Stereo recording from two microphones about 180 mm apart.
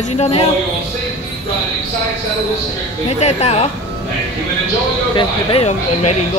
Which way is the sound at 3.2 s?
35° left (ahead or behind).